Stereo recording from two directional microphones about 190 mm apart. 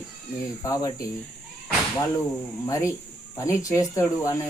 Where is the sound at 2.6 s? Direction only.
15° left (ahead or behind).